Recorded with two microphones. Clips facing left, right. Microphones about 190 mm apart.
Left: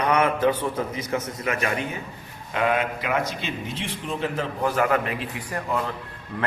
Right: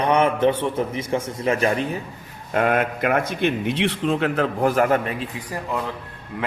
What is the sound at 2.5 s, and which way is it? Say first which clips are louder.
A man's voice: right 3 dB; 50° right (ahead or behind).